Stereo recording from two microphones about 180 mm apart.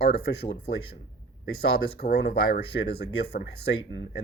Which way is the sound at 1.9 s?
65° left (ahead or behind).